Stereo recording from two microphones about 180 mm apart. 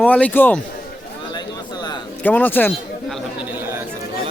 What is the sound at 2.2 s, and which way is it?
Speech, 10° left (ahead or behind).